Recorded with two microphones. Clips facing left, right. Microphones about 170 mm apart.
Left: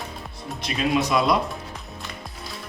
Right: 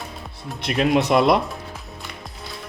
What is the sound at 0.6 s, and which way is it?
Speech, 60° right (ahead or behind).